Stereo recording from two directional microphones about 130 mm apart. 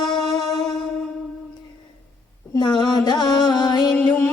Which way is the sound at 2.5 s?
35° left (ahead or behind).